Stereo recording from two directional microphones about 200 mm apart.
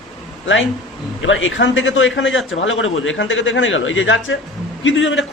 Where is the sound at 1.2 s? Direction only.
70° left (ahead or behind).